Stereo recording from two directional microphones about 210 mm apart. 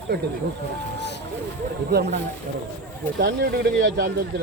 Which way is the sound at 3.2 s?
60° right (ahead or behind).